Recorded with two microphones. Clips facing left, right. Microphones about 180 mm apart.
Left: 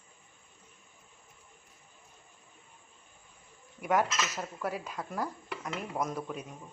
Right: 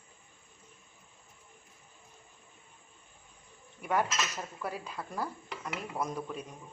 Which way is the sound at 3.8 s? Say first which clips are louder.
Left 2 dB; 10° left (ahead or behind).